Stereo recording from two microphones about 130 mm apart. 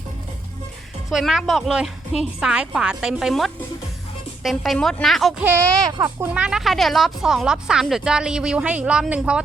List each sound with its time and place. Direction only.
1.1 s speech: 5° right (ahead or behind)
6.0 s speech: 20° right (ahead or behind)
6.3 s speech: 5° right (ahead or behind)